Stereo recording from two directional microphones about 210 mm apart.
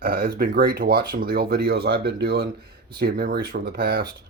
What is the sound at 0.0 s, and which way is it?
Speech, 45° right (ahead or behind).